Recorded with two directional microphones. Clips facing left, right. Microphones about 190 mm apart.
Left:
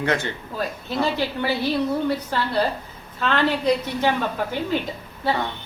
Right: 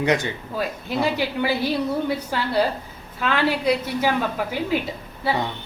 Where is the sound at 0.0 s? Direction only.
15° right (ahead or behind).